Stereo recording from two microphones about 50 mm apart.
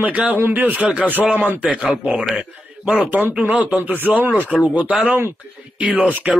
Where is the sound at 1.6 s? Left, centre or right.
Right.